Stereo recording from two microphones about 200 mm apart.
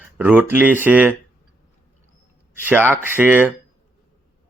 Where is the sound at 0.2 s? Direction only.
10° right (ahead or behind).